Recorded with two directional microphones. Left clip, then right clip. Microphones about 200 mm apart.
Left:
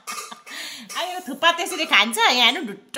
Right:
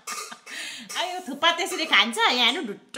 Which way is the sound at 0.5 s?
15° left (ahead or behind).